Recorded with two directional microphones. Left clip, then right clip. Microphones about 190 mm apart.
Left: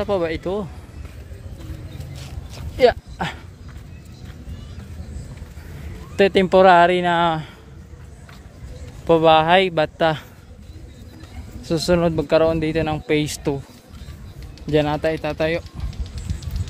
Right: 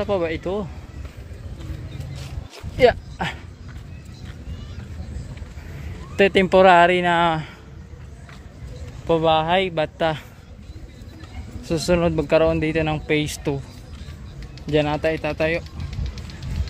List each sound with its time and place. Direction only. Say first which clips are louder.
0.0 s speech: left 1 dB; 15° left (ahead or behind)
2.8 s speech: even; 10° left (ahead or behind)
6.1 s speech: left 1 dB; 15° left (ahead or behind)
9.0 s speech: left 4 dB; 35° left (ahead or behind)
11.6 s speech: left 1 dB; 15° left (ahead or behind)
14.7 s speech: left 1 dB; 15° left (ahead or behind)